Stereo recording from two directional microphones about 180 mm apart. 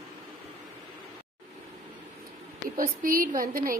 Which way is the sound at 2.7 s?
50° right (ahead or behind).